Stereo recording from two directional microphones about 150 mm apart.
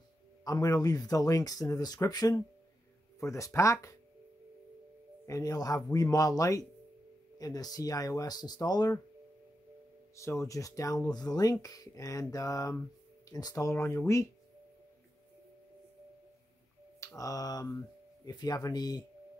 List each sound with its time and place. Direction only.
0.4 s speech: 25° left (ahead or behind)
5.2 s speech: 20° left (ahead or behind)
10.1 s speech: 20° left (ahead or behind)
17.0 s mantra: 20° left (ahead or behind)
18.2 s speech: 25° left (ahead or behind)